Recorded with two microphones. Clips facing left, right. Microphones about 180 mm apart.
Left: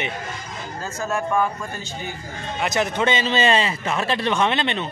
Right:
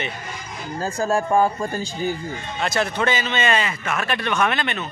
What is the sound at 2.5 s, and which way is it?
A man's voice, 20° left (ahead or behind).